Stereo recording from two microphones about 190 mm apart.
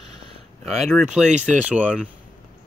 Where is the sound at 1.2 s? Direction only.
40° right (ahead or behind).